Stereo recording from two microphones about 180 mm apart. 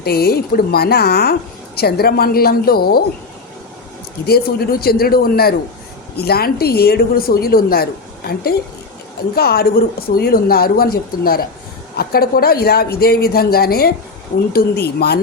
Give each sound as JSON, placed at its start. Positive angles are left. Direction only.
{"t": 0.0, "sound": "speech", "side_deg": 60}
{"t": 4.3, "sound": "speech", "side_deg": 60}